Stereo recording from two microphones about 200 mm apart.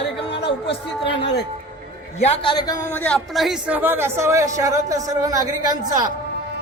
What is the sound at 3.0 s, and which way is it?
A man's voice, centre (ahead or behind).